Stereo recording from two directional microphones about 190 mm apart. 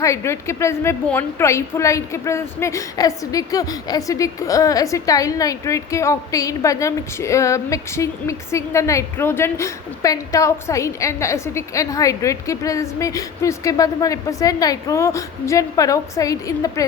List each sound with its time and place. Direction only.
0.0 s a woman's voice: 15° left (ahead or behind)